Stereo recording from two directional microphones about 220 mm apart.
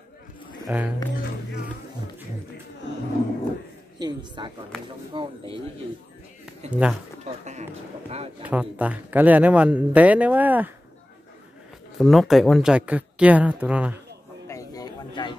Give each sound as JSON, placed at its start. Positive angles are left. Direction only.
{"t": 0.7, "sound": "speech", "side_deg": -5}
{"t": 4.0, "sound": "speech", "side_deg": -20}
{"t": 6.7, "sound": "speech", "side_deg": -5}
{"t": 7.2, "sound": "speech", "side_deg": -30}
{"t": 8.4, "sound": "speech", "side_deg": -5}
{"t": 12.0, "sound": "speech", "side_deg": 0}
{"t": 14.5, "sound": "a sound", "side_deg": 15}